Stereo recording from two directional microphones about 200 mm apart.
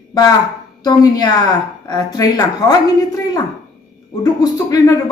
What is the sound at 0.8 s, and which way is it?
Speech, 20° left (ahead or behind).